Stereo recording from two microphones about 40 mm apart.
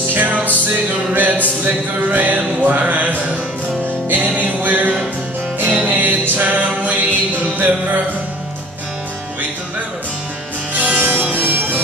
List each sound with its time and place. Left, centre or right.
0.1 s music: right
4.4 s music: right
5.6 s music: right
10.8 s music: right